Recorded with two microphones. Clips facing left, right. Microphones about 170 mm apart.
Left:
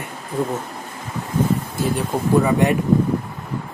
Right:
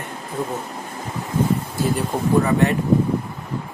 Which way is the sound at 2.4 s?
15° left (ahead or behind).